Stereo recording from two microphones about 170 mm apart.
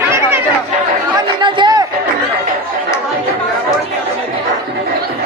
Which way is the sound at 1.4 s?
25° right (ahead or behind).